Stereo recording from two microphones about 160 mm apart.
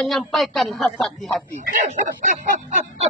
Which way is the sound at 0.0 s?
Centre (ahead or behind).